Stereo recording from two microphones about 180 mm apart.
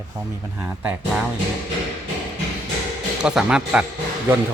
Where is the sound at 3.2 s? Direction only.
5° right (ahead or behind).